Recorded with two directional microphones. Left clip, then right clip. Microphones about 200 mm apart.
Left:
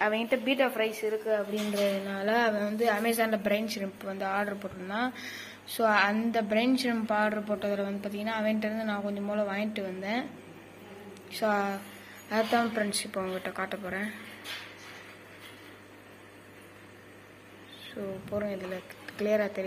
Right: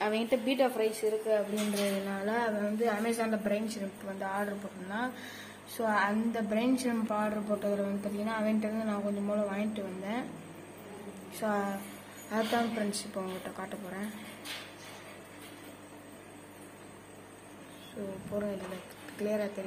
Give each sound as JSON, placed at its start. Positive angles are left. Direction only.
{"t": 0.0, "sound": "a woman's voice", "side_deg": -5}
{"t": 11.3, "sound": "a woman's voice", "side_deg": 15}
{"t": 18.0, "sound": "a woman's voice", "side_deg": 10}